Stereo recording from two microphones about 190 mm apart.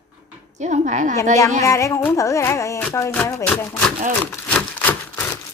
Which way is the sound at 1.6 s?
15° left (ahead or behind).